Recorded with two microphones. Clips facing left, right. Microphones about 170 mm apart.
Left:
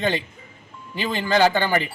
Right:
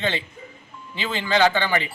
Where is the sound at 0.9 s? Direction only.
45° left (ahead or behind).